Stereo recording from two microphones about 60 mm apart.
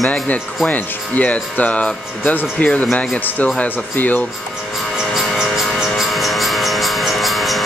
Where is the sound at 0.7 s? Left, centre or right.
Left.